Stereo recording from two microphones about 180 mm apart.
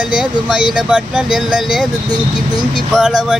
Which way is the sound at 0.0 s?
5° right (ahead or behind).